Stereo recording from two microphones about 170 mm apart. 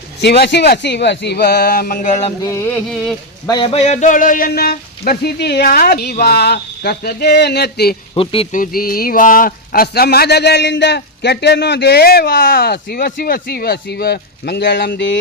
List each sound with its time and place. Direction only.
0.2 s speech: 80° left; by 2.2 s 50° left (ahead or behind)
2.4 s a sound: 15° left (ahead or behind)
2.9 s speech: centre (ahead or behind)
3.4 s a man's voice: 25° left (ahead or behind); by 7.9 s 70° left (ahead or behind)
8.1 s speech: 30° left (ahead or behind)
8.5 s speech: 55° left (ahead or behind); by 15.2 s 90° left